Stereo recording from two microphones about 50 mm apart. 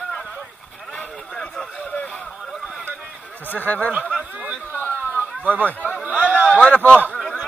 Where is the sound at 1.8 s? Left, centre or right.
Left.